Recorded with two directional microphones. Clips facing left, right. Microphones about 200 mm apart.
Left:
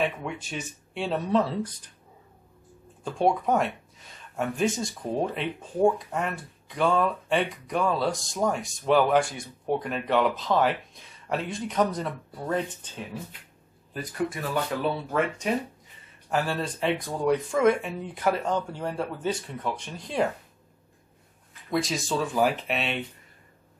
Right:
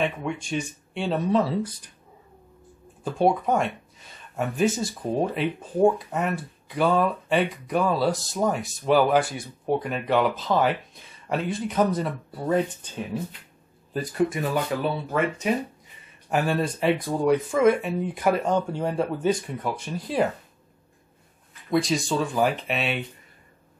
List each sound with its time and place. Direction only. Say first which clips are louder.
0.0 s speech: right 2 dB; 5° left (ahead or behind)
3.0 s speech: right 2 dB; 5° right (ahead or behind)
13.9 s speech: right 6 dB; 20° right (ahead or behind)
14.8 s speech: right 1 dB; centre (ahead or behind)
16.3 s speech: right 4 dB; 15° right (ahead or behind)
21.6 s speech: right 4 dB; centre (ahead or behind)